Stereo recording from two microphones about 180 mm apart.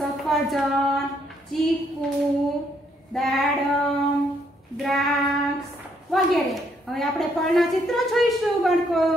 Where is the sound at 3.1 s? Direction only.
Centre (ahead or behind).